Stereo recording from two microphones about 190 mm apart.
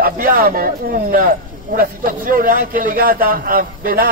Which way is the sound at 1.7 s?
45° right (ahead or behind).